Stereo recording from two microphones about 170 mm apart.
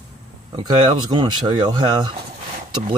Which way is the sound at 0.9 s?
25° right (ahead or behind).